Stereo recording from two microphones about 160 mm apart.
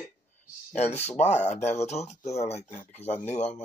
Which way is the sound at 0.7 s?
45° left (ahead or behind).